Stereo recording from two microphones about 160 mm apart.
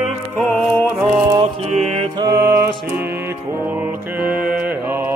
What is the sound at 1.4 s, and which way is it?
Music, 45° right (ahead or behind).